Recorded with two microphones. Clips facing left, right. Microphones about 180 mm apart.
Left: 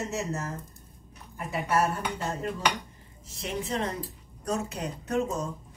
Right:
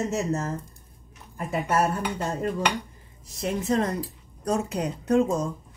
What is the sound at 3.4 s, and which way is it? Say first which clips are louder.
Speech: right 6 dB; 40° right (ahead or behind).